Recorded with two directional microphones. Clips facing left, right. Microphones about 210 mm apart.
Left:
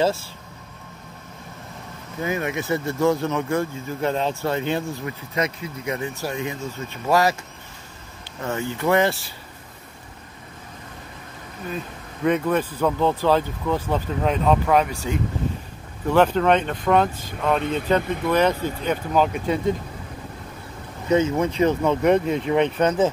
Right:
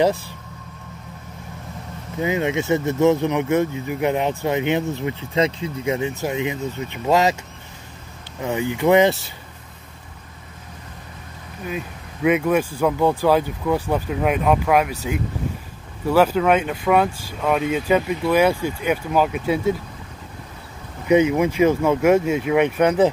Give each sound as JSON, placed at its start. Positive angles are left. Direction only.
{"t": 0.0, "sound": "speech", "side_deg": -15}
{"t": 2.2, "sound": "speech", "side_deg": -20}
{"t": 8.4, "sound": "speech", "side_deg": -15}
{"t": 11.6, "sound": "speech", "side_deg": -10}
{"t": 16.1, "sound": "speech", "side_deg": -5}
{"t": 21.1, "sound": "speech", "side_deg": -15}